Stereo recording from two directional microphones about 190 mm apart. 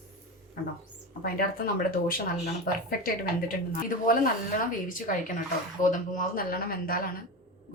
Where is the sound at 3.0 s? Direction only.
50° left (ahead or behind).